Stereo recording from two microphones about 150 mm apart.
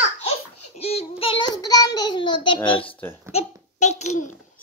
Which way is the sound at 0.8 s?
40° left (ahead or behind).